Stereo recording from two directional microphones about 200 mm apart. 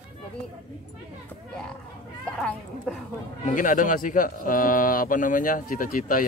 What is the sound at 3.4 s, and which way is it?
A man's voice, 40° left (ahead or behind).